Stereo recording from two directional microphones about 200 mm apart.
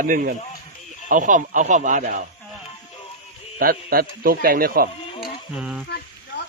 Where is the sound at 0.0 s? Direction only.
45° right (ahead or behind).